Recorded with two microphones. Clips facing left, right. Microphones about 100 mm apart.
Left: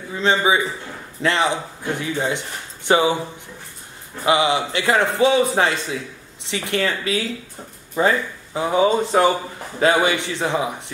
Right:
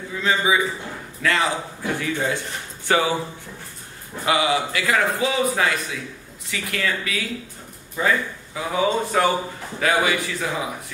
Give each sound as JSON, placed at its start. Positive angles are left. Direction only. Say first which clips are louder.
{"t": 0.1, "sound": "a man's voice", "louder": "left 3 dB", "side_deg": 30}
{"t": 4.3, "sound": "a man's voice", "louder": "left 3 dB", "side_deg": 25}